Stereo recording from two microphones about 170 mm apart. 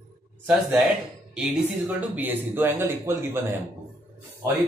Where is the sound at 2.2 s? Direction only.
10° right (ahead or behind).